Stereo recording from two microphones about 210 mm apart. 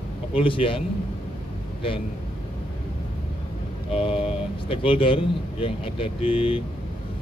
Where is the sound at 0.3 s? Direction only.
25° left (ahead or behind).